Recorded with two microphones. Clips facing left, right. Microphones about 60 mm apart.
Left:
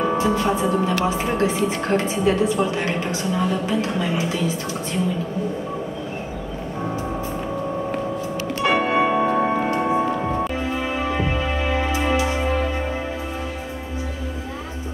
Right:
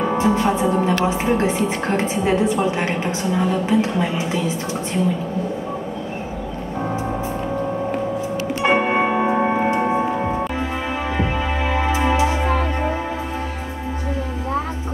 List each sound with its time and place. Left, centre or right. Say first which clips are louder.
0.2 s speech: right 2 dB; right
8.6 s music: right 1 dB; right
11.1 s music: right 1 dB; right